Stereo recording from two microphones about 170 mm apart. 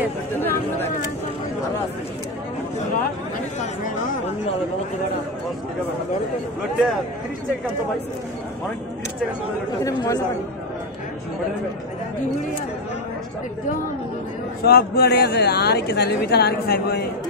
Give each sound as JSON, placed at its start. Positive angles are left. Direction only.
{"t": 0.4, "sound": "a sound", "side_deg": 10}
{"t": 9.8, "sound": "speech", "side_deg": 20}
{"t": 14.6, "sound": "a woman's voice", "side_deg": 65}